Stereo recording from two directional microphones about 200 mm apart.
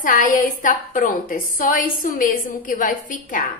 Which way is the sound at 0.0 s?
40° left (ahead or behind).